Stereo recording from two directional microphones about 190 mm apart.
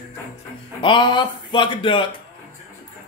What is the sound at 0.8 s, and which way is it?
Speech, 25° left (ahead or behind).